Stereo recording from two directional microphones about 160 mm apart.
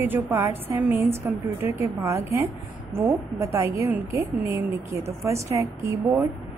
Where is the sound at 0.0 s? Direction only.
15° right (ahead or behind).